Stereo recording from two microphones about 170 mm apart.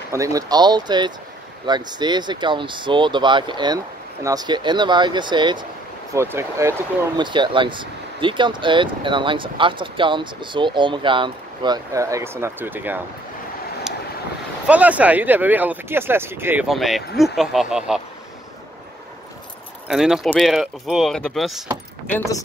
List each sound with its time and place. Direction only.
0.1 s speech: 20° right (ahead or behind)
6.1 s speech: 15° right (ahead or behind)
7.2 s speech: 30° right (ahead or behind); by 13.0 s 10° right (ahead or behind)
14.7 s speech: 10° right (ahead or behind)
16.6 s speech: centre (ahead or behind)
19.9 s speech: 5° right (ahead or behind)
22.1 s speech: 15° left (ahead or behind)